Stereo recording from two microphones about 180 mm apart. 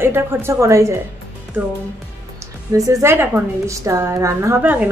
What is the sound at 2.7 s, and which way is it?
A woman's voice, 20° right (ahead or behind).